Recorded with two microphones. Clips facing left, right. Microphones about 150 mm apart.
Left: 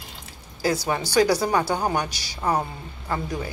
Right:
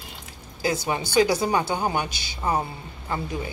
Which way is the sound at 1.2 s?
15° right (ahead or behind).